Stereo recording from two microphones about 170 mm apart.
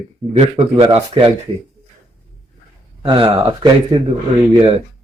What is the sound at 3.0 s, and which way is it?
Speech, 30° right (ahead or behind).